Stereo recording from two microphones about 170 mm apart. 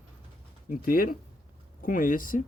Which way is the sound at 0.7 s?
60° left (ahead or behind).